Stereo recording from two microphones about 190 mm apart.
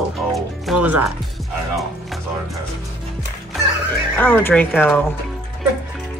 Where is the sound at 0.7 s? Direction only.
5° right (ahead or behind).